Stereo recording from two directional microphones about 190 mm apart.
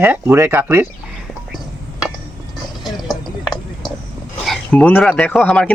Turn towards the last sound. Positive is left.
turn(degrees=5)  # may be behind; listen again after turning